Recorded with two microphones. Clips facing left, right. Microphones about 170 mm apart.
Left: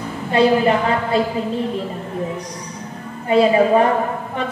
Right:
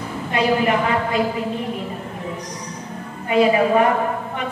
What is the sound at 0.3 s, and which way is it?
Speech, 30° left (ahead or behind).